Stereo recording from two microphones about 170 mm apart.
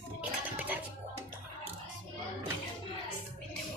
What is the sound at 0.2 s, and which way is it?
Cutlery, 10° right (ahead or behind).